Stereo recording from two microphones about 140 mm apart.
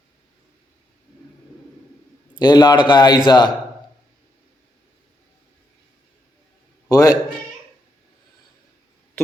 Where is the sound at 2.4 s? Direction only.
30° left (ahead or behind).